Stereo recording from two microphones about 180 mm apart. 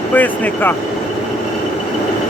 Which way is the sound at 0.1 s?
10° left (ahead or behind).